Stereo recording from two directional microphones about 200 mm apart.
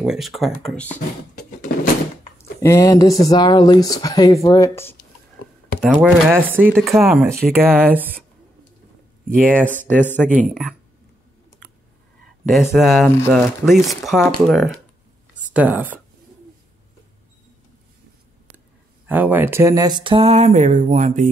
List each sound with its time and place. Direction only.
0.0 s speech: centre (ahead or behind)
1.7 s a sound: 50° left (ahead or behind)
2.6 s speech: 15° left (ahead or behind)
5.8 s speech: centre (ahead or behind)
9.3 s speech: 10° right (ahead or behind)
9.9 s speech: 10° left (ahead or behind)
10.5 s speech: 5° right (ahead or behind)
12.7 s speech: centre (ahead or behind)
19.0 s speech: 10° right (ahead or behind); by 21.3 s 35° right (ahead or behind)